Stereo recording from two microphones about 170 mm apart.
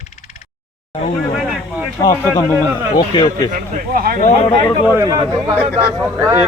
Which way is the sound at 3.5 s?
55° right (ahead or behind).